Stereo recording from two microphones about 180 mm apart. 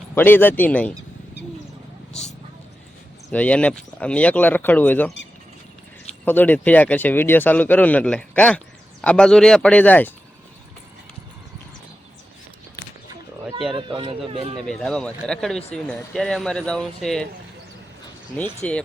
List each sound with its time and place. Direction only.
0.1 s speech: 10° left (ahead or behind)
3.3 s speech: 5° left (ahead or behind)
6.2 s speech: 10° left (ahead or behind)
13.7 s speech: 30° right (ahead or behind)
14.7 s speech: 5° left (ahead or behind)
18.6 s speech: 5° left (ahead or behind)